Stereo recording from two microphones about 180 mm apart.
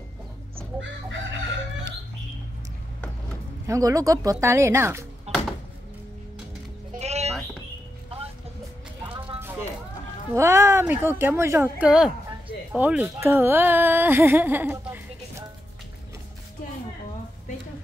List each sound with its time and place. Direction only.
3.6 s speech: 20° right (ahead or behind)
5.3 s a sound: 35° right (ahead or behind)
6.9 s bleat: 40° right (ahead or behind)
9.0 s music: 25° right (ahead or behind)
10.3 s speech: 15° right (ahead or behind)